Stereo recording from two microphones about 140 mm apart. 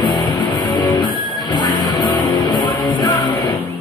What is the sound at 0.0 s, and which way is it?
Music, 30° left (ahead or behind).